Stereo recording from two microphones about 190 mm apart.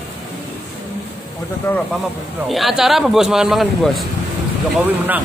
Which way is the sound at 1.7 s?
15° left (ahead or behind).